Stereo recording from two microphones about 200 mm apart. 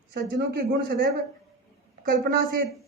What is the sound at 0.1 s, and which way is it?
Speech, 50° right (ahead or behind).